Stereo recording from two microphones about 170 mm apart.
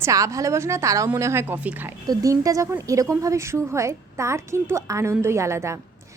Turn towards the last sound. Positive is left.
turn(degrees=-15)  # may be behind; listen again after turning